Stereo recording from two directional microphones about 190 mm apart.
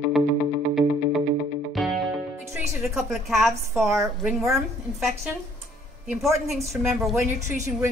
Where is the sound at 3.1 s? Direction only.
Centre (ahead or behind).